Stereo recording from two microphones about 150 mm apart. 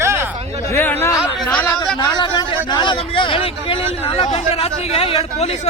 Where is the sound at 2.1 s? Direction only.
25° left (ahead or behind).